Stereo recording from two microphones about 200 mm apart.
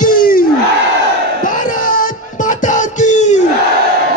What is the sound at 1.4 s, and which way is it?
Music, 40° left (ahead or behind).